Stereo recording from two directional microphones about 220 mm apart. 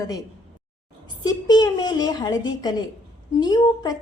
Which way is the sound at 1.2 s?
20° left (ahead or behind).